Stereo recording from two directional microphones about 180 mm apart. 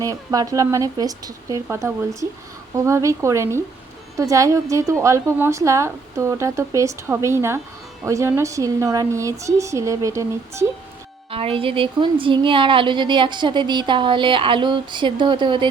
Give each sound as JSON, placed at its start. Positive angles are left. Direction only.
{"t": 0.0, "sound": "a woman's voice", "side_deg": -20}
{"t": 11.3, "sound": "speech", "side_deg": -30}